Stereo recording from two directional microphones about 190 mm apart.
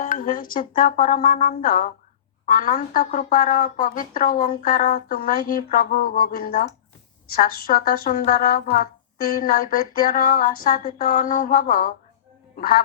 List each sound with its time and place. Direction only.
0.0 s speech: 45° left (ahead or behind)